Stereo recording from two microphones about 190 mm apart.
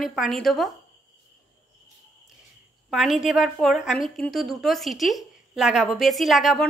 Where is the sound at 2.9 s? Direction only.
Centre (ahead or behind).